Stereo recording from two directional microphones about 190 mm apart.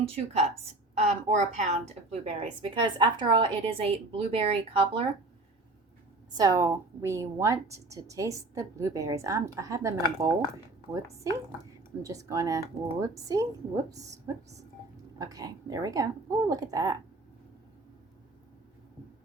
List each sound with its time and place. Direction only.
0.9 s a woman's voice: 35° right (ahead or behind)
6.3 s a woman's voice: 20° right (ahead or behind)
15.2 s a woman's voice: 20° right (ahead or behind)